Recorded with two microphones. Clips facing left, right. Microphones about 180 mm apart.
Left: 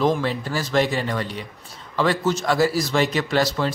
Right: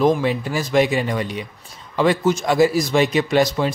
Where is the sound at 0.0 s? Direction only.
15° right (ahead or behind).